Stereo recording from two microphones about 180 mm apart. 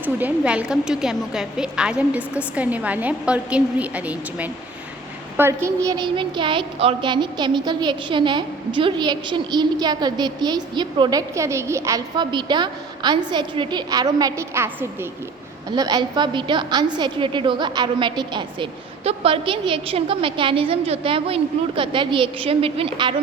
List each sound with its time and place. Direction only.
0.0 s a woman's voice: 10° right (ahead or behind); by 23.1 s 30° right (ahead or behind)